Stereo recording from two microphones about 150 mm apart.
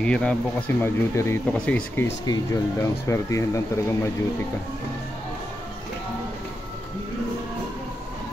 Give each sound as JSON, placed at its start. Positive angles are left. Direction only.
{"t": 0.0, "sound": "speech", "side_deg": 5}
{"t": 2.2, "sound": "speech", "side_deg": 25}